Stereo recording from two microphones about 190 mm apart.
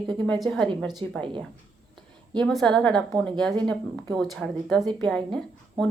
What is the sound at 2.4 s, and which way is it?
A woman's voice, centre (ahead or behind).